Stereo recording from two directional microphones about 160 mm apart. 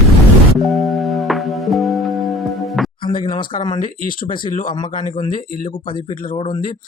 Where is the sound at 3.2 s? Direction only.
30° left (ahead or behind).